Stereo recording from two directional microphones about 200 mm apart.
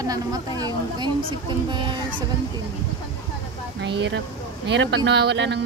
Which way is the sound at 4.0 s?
60° right (ahead or behind).